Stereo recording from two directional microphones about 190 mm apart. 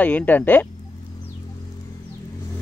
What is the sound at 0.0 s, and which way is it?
Speech, 10° left (ahead or behind).